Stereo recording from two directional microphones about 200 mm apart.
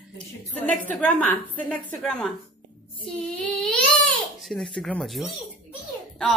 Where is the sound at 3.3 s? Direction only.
5° left (ahead or behind).